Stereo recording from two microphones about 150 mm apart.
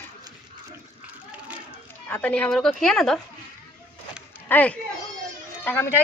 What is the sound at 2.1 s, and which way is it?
A woman's voice, 10° left (ahead or behind).